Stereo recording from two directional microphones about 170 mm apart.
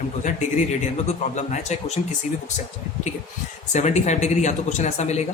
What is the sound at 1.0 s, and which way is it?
Speech, 45° left (ahead or behind).